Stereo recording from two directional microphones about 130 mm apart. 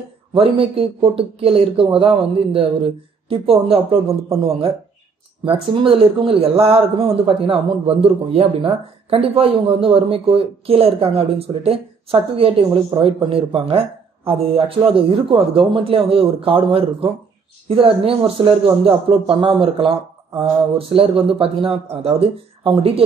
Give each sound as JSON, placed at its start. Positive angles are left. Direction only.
{"t": 0.3, "sound": "speech", "side_deg": -45}